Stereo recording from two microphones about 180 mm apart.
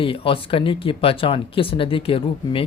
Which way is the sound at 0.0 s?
30° left (ahead or behind).